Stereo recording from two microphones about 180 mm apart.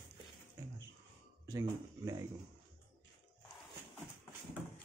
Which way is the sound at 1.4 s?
20° right (ahead or behind).